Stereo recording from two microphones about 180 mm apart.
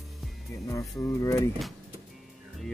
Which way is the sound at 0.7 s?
15° left (ahead or behind).